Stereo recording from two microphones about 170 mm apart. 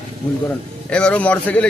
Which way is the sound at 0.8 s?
5° left (ahead or behind).